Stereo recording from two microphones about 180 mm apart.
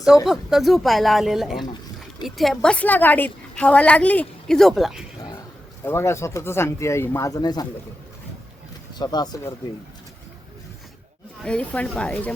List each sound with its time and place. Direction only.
0.3 s a woman's voice: centre (ahead or behind)
5.8 s a woman's voice: 15° left (ahead or behind)
9.0 s speech: 20° left (ahead or behind)
11.4 s a woman's voice: 5° left (ahead or behind)